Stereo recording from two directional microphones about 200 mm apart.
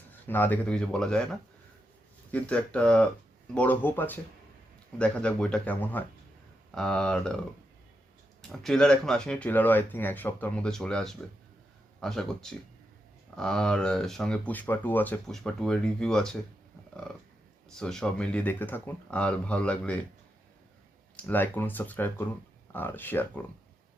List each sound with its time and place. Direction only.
0.3 s speech: 10° left (ahead or behind)
8.4 s speech: 5° left (ahead or behind)
17.7 s speech: 5° left (ahead or behind)
21.2 s speech: 10° left (ahead or behind)